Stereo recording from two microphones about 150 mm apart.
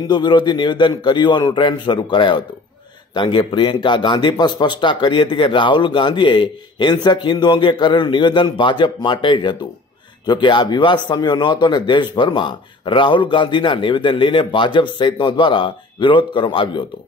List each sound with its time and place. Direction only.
0.1 s speech: 30° left (ahead or behind)